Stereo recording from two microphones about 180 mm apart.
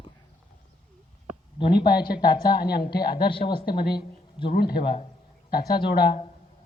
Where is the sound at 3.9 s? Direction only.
25° left (ahead or behind).